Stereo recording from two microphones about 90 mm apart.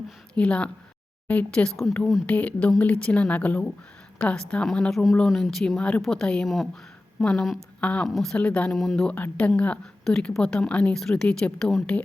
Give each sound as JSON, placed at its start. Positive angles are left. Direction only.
{"t": 0.3, "sound": "a woman's voice", "side_deg": 15}
{"t": 7.8, "sound": "speech", "side_deg": 15}
{"t": 8.0, "sound": "speech", "side_deg": 0}
{"t": 8.4, "sound": "a woman's voice", "side_deg": 15}
{"t": 8.7, "sound": "speech", "side_deg": 0}
{"t": 9.0, "sound": "a woman's voice", "side_deg": 15}